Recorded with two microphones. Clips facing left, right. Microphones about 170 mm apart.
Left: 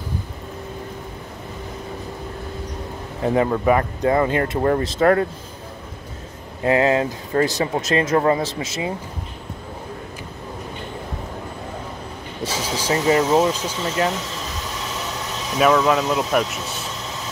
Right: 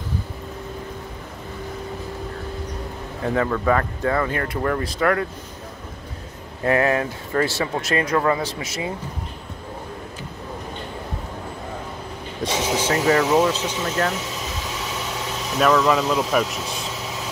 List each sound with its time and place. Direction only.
3.3 s speech: 25° left (ahead or behind)
6.6 s speech: 20° left (ahead or behind)
12.4 s speech: 10° left (ahead or behind)
15.5 s speech: 5° left (ahead or behind)